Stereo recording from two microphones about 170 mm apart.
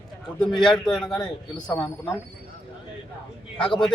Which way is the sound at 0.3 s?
5° left (ahead or behind).